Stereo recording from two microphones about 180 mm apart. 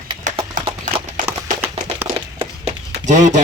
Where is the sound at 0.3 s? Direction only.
45° right (ahead or behind).